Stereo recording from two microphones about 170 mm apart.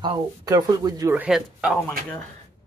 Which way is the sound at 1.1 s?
5° right (ahead or behind).